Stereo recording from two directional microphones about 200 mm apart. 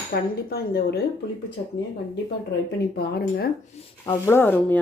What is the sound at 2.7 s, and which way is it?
Speech, 50° left (ahead or behind).